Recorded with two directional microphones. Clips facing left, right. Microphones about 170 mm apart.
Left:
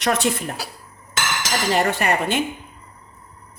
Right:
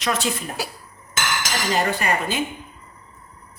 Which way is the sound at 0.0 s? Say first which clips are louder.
Left 3 dB; 65° left (ahead or behind).